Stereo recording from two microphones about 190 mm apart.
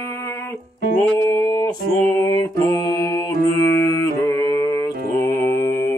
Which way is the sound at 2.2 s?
20° left (ahead or behind).